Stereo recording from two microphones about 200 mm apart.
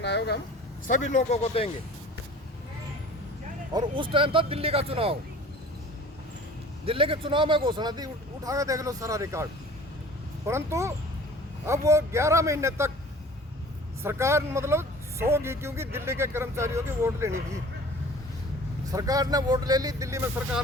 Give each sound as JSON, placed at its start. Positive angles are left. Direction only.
{"t": 0.0, "sound": "speech", "side_deg": 60}
{"t": 0.9, "sound": "speech", "side_deg": 40}
{"t": 3.7, "sound": "speech", "side_deg": -20}
{"t": 6.8, "sound": "a man's voice", "side_deg": -25}
{"t": 14.0, "sound": "a man's voice", "side_deg": -15}
{"t": 18.9, "sound": "a man's voice", "side_deg": -15}